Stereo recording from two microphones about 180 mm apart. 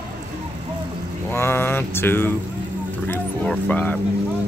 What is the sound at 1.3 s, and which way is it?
Mantra, 15° left (ahead or behind).